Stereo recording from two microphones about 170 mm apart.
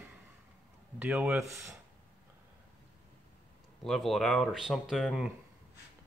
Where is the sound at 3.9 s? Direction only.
Centre (ahead or behind).